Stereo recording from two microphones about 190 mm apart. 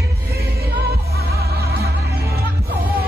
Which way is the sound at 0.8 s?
55° right (ahead or behind).